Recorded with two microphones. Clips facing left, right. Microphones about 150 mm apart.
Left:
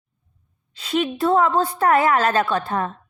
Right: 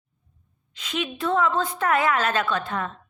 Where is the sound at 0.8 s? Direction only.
35° left (ahead or behind).